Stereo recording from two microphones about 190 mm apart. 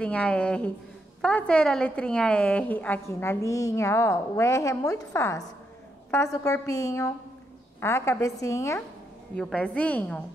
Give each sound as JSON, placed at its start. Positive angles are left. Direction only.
{"t": 0.0, "sound": "a woman's voice", "side_deg": 5}
{"t": 9.4, "sound": "a woman's voice", "side_deg": 5}